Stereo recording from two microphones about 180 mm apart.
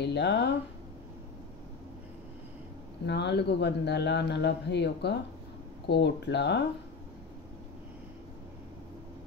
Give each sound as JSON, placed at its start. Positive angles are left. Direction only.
{"t": 0.0, "sound": "speech", "side_deg": 75}
{"t": 3.1, "sound": "speech", "side_deg": 70}